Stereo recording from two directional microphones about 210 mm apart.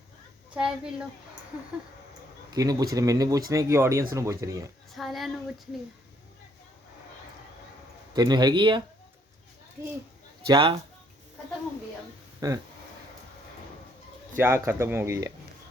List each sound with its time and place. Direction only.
0.5 s a woman's voice: 5° right (ahead or behind)
2.5 s speech: 15° right (ahead or behind)
4.9 s a woman's voice: centre (ahead or behind)
8.1 s a man's voice: 20° right (ahead or behind)
12.4 s speech: 20° right (ahead or behind)
14.3 s speech: 10° right (ahead or behind)